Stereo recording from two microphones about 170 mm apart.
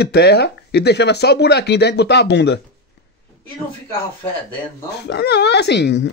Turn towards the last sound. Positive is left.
turn(degrees=90)